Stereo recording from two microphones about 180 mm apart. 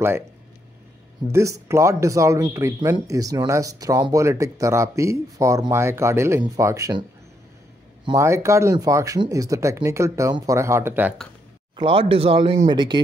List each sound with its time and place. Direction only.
1.3 s speech: 15° right (ahead or behind)
8.2 s speech: 15° right (ahead or behind)
11.7 s speech: 30° right (ahead or behind)